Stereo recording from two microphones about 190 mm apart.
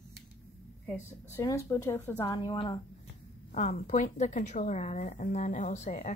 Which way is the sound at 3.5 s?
40° left (ahead or behind).